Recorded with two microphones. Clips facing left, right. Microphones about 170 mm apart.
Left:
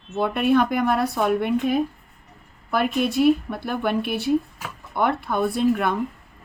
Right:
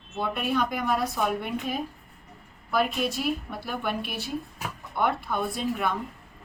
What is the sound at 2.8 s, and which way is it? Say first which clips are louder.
Speech: left 6 dB; 60° left (ahead or behind).